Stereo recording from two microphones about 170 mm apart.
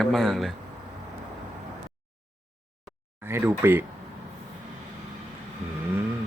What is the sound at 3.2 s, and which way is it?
Speech, 15° right (ahead or behind).